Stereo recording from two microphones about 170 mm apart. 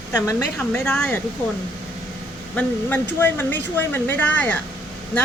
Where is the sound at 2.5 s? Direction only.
10° left (ahead or behind).